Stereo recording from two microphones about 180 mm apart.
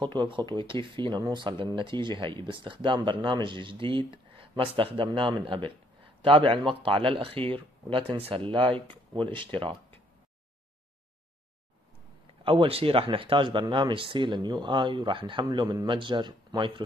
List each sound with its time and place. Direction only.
0.0 s speech: 25° right (ahead or behind)
12.4 s speech: 30° right (ahead or behind)